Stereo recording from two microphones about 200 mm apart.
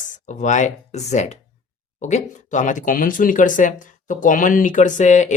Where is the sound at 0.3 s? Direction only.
40° left (ahead or behind).